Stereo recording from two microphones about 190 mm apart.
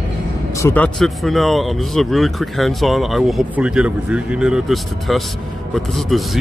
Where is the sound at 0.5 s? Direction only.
10° left (ahead or behind).